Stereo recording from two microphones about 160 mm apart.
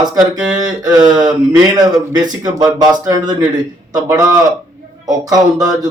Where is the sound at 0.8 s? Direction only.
25° right (ahead or behind).